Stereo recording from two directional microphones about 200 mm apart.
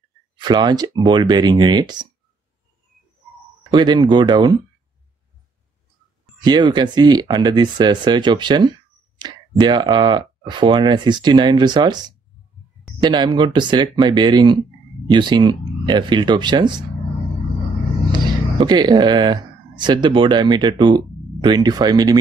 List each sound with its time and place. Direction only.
0.4 s speech: 20° right (ahead or behind)
3.7 s speech: 20° right (ahead or behind)
6.4 s speech: 20° right (ahead or behind)
13.0 s speech: 20° right (ahead or behind)
18.1 s speech: 20° right (ahead or behind)